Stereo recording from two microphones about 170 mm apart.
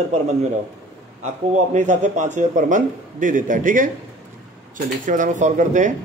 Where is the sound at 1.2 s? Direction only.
45° right (ahead or behind).